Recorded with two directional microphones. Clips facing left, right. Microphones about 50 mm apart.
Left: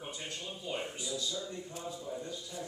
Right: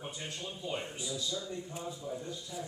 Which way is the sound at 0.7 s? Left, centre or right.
Centre.